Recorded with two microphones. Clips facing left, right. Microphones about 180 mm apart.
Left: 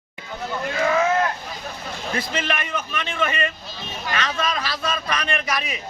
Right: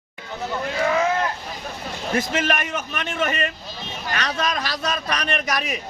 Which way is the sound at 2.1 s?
45° right (ahead or behind).